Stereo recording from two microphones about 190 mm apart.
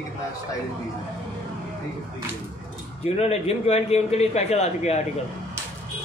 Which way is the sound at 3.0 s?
35° left (ahead or behind).